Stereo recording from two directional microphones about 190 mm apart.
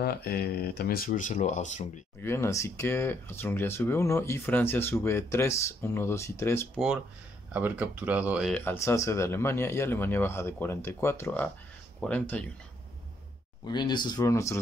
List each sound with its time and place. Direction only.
0.0 s speech: 55° left (ahead or behind); by 1.9 s 40° left (ahead or behind)
2.2 s speech: 15° left (ahead or behind)
7.5 s speech: 10° right (ahead or behind)
8.5 s speech: 15° left (ahead or behind)
13.7 s speech: 25° left (ahead or behind)